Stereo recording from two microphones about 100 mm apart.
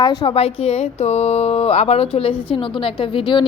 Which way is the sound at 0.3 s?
80° left.